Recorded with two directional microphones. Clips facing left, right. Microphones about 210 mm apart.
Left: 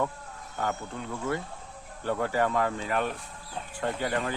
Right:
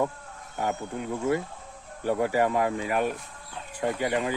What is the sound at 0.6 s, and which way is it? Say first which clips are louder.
Speech: right 3 dB; 10° right (ahead or behind).